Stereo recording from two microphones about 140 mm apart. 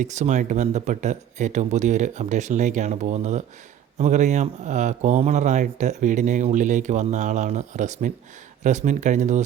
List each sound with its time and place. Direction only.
0.0 s speech: 60° right (ahead or behind)